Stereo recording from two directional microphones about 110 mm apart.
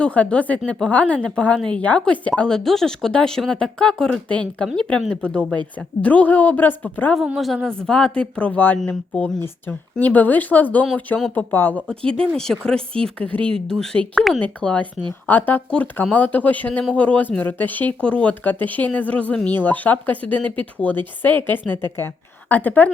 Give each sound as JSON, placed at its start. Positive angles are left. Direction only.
{"t": 0.0, "sound": "speech", "side_deg": 10}
{"t": 7.3, "sound": "a woman's voice", "side_deg": 0}